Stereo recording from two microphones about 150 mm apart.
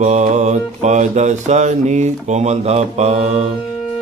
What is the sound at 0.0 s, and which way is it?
Mantra, 50° right (ahead or behind).